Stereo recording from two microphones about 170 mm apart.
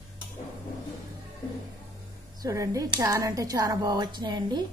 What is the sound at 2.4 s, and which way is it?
Speech, 20° right (ahead or behind).